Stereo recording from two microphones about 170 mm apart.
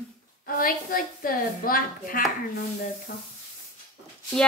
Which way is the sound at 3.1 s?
70° left (ahead or behind).